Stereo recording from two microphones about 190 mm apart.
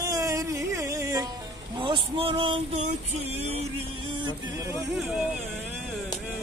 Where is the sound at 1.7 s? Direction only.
25° right (ahead or behind).